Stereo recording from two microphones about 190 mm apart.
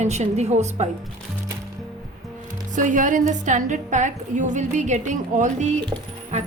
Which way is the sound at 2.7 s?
40° right (ahead or behind).